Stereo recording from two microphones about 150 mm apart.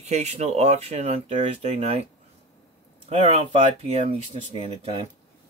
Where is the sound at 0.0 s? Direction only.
50° right (ahead or behind).